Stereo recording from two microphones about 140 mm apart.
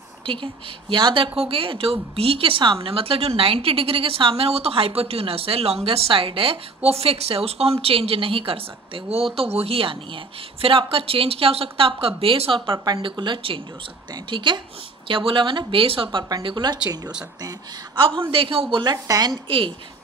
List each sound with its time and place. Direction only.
0.3 s a woman's voice: 35° right (ahead or behind)
17.9 s a woman's voice: 35° right (ahead or behind)